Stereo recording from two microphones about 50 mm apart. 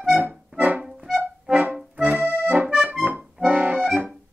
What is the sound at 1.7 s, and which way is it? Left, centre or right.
Accordion, centre.